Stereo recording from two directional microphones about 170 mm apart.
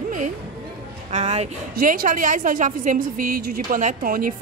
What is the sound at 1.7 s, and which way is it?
A woman's voice, 60° right (ahead or behind).